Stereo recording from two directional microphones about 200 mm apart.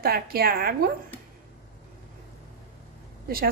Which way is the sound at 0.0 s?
50° right (ahead or behind).